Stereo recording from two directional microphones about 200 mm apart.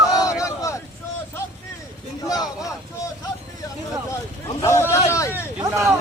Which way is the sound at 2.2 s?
20° left (ahead or behind).